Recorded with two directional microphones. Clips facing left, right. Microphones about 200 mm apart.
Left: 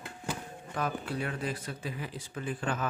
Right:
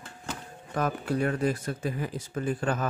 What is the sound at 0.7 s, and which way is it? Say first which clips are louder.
Speech: right 5 dB; 45° right (ahead or behind).